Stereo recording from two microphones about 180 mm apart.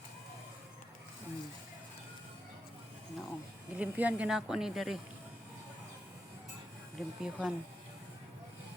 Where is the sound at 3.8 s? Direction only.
10° right (ahead or behind).